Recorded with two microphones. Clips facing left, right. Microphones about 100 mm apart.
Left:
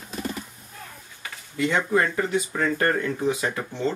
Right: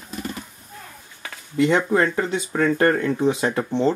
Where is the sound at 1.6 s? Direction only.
30° right (ahead or behind).